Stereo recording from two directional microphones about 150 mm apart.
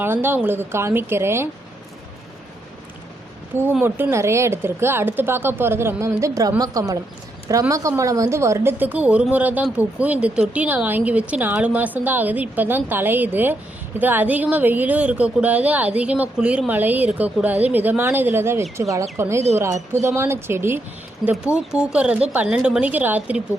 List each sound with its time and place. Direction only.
0.0 s speech: 15° right (ahead or behind)
3.5 s a woman's voice: 15° right (ahead or behind)